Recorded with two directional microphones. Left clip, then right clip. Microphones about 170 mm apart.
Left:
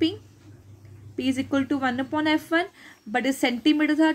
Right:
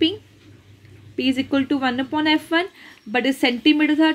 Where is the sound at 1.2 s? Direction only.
20° right (ahead or behind).